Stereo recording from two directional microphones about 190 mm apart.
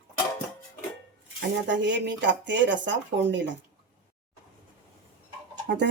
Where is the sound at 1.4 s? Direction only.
70° right (ahead or behind).